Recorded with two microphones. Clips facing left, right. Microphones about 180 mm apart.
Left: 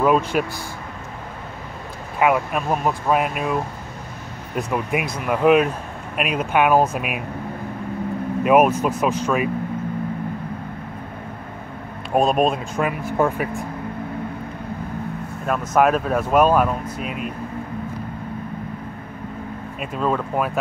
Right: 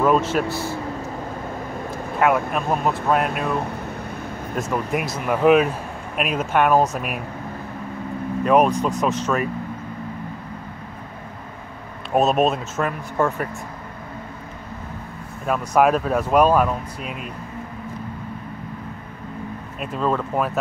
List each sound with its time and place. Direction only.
0.0 s speech: 5° left (ahead or behind)
2.1 s speech: 5° left (ahead or behind)
4.6 s speech: centre (ahead or behind)
8.5 s speech: 5° left (ahead or behind)
12.1 s speech: 5° right (ahead or behind)
13.2 s speech: 15° left (ahead or behind)
15.4 s speech: centre (ahead or behind)
19.8 s speech: 5° left (ahead or behind)